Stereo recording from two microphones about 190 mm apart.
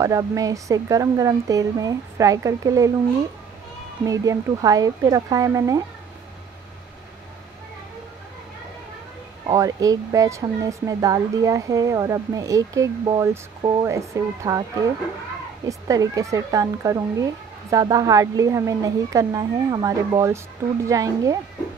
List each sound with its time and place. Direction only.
0.0 s speech: 15° right (ahead or behind)
4.0 s speech: 20° right (ahead or behind)
9.5 s speech: 20° right (ahead or behind)
15.6 s speech: 20° right (ahead or behind)